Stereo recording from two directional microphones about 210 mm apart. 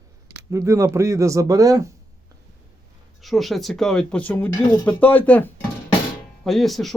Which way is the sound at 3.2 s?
Centre (ahead or behind).